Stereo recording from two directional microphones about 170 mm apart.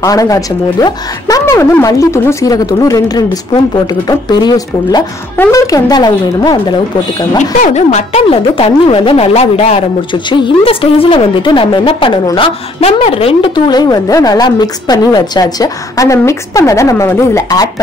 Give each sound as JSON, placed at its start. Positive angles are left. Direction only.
{"t": 0.0, "sound": "a woman's voice", "side_deg": 20}
{"t": 7.6, "sound": "a woman's voice", "side_deg": 40}